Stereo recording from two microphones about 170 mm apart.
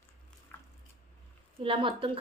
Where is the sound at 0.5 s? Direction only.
15° left (ahead or behind).